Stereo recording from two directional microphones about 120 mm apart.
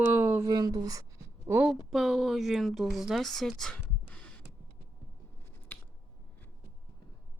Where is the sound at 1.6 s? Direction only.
Centre (ahead or behind).